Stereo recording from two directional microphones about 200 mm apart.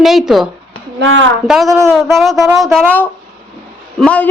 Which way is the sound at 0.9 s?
70° right (ahead or behind).